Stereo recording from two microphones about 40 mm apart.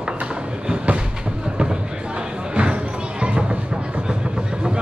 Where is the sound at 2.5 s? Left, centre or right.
Right.